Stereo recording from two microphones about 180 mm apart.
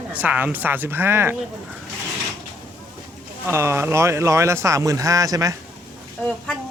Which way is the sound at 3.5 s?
15° right (ahead or behind).